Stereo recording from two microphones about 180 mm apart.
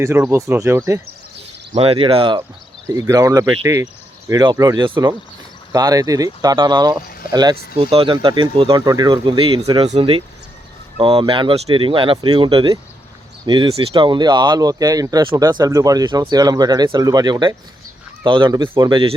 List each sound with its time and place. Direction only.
0.0 s speech: 15° right (ahead or behind)
1.7 s speech: 30° right (ahead or behind)
2.8 s speech: 20° right (ahead or behind)